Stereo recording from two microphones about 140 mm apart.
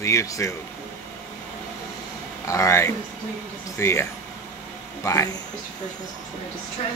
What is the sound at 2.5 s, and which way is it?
Speech, 20° left (ahead or behind).